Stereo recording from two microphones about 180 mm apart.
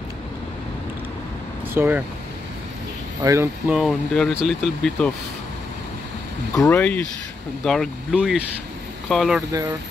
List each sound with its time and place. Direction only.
1.7 s speech: 10° right (ahead or behind)
3.3 s speech: 15° right (ahead or behind)
3.7 s speech: centre (ahead or behind)
6.6 s speech: 10° left (ahead or behind)
9.5 s speech: 20° right (ahead or behind)